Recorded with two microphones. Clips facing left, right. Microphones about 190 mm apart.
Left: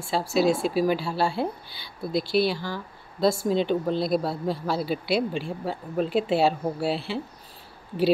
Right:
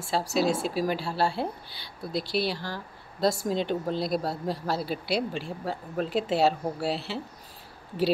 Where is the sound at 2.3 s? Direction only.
35° right (ahead or behind).